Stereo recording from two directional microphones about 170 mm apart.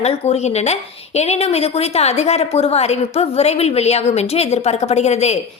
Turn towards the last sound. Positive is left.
turn(degrees=40)  # may be behind; listen again after turning